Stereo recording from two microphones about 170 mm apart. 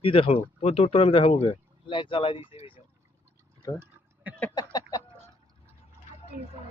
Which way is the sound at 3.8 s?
10° right (ahead or behind).